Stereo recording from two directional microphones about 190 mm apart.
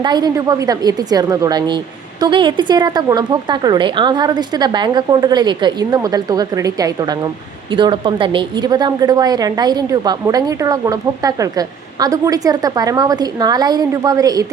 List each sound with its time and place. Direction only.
0.0 s a woman's voice: 20° right (ahead or behind)